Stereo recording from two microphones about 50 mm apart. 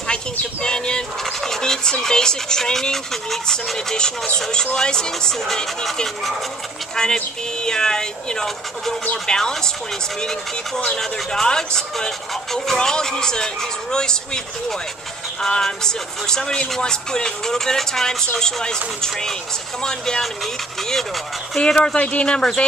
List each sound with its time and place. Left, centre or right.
0.1 s speech: centre
7.0 s speech: centre
10.9 s speech: centre
15.4 s speech: centre
21.5 s speech: centre